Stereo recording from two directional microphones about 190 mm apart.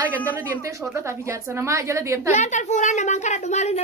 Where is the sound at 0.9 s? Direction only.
15° right (ahead or behind).